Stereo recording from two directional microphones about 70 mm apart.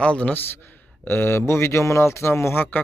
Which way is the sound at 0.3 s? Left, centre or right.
Left.